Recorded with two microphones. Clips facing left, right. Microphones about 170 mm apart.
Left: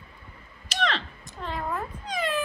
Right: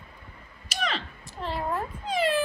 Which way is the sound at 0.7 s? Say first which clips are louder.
Left 3 dB; 5° right (ahead or behind).